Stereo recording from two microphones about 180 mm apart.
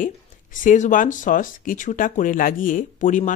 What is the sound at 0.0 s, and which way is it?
Speech, 50° left (ahead or behind).